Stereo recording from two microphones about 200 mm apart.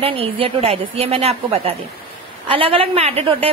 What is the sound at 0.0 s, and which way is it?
A woman's voice, 30° right (ahead or behind).